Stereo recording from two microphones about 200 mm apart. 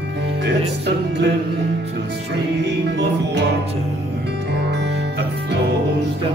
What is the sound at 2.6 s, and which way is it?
Music, 60° right (ahead or behind).